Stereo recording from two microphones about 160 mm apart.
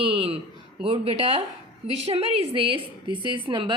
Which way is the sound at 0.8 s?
35° right (ahead or behind).